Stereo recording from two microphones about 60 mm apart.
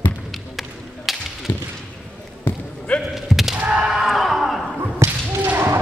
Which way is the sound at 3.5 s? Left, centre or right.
Right.